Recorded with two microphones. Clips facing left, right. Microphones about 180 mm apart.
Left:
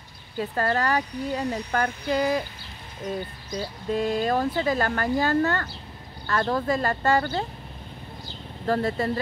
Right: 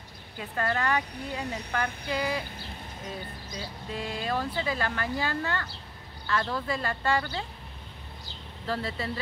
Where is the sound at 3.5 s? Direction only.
45° left (ahead or behind).